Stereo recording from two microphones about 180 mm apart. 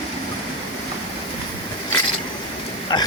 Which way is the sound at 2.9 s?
25° left (ahead or behind).